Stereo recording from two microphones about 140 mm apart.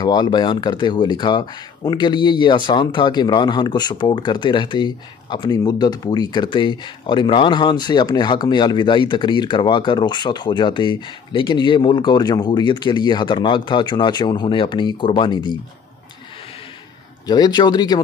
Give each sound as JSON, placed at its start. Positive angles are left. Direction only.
{"t": 0.0, "sound": "speech", "side_deg": 30}
{"t": 17.3, "sound": "speech", "side_deg": 30}